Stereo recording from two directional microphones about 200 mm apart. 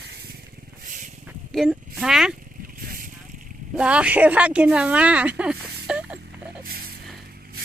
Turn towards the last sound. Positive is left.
turn(degrees=-5)  # may be behind; listen again after turning